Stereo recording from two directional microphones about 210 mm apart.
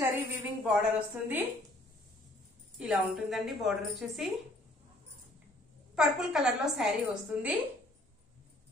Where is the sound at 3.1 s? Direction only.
Centre (ahead or behind).